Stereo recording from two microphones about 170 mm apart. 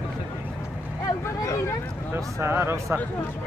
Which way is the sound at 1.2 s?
20° left (ahead or behind).